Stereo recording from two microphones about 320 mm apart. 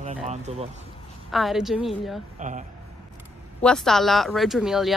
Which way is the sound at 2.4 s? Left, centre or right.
Right.